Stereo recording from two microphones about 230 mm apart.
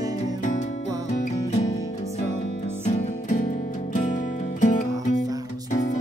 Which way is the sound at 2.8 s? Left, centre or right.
Left.